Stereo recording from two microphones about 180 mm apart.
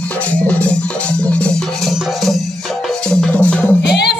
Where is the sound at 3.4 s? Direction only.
5° left (ahead or behind).